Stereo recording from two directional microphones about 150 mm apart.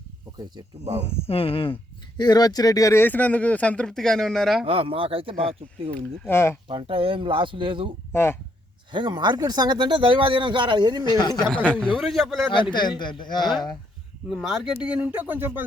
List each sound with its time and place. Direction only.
0.3 s speech: 25° right (ahead or behind)
1.0 s speech: 40° left (ahead or behind)
2.1 s speech: 25° left (ahead or behind); by 4.6 s centre (ahead or behind)
4.6 s speech: 40° right (ahead or behind)
5.9 s speech: 15° left (ahead or behind)
6.7 s speech: 35° right (ahead or behind)
8.1 s speech: 15° left (ahead or behind)
8.9 s speech: 30° right (ahead or behind)
11.0 s speech: 30° left (ahead or behind)
11.4 s a man's voice: 10° left (ahead or behind)
12.7 s speech: 30° left (ahead or behind)
14.3 s speech: centre (ahead or behind)